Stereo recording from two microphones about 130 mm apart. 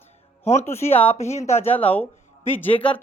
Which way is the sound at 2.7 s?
40° left (ahead or behind).